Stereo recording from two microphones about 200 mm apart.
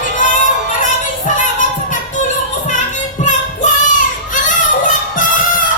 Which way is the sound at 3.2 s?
40° left (ahead or behind).